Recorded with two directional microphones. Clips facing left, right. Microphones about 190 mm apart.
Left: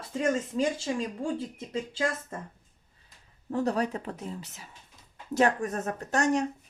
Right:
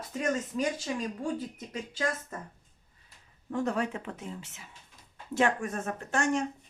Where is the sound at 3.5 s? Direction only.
35° left (ahead or behind).